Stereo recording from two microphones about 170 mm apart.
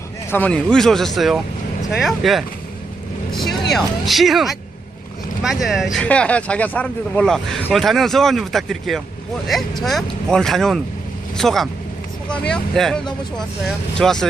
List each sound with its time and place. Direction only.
0.3 s speech: 10° left (ahead or behind)